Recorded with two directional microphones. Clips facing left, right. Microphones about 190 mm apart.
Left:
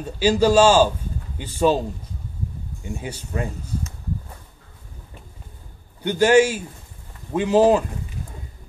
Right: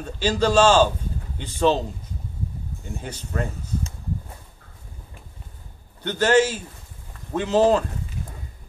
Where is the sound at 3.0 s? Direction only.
10° left (ahead or behind).